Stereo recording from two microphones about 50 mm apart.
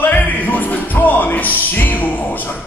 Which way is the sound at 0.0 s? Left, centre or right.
Left.